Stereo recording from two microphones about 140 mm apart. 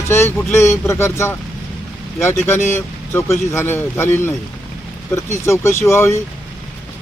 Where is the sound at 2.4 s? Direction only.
15° left (ahead or behind).